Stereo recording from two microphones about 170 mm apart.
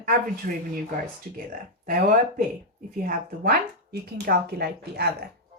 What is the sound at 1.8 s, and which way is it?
Speech, 55° right (ahead or behind).